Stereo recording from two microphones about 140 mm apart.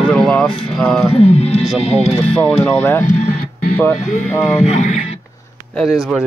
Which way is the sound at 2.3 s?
10° left (ahead or behind).